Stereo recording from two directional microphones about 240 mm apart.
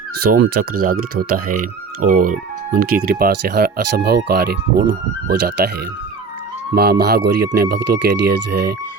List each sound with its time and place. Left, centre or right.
0.2 s speech: right
6.7 s speech: right